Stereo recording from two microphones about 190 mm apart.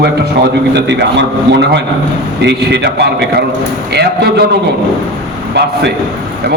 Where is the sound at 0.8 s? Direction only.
65° right (ahead or behind).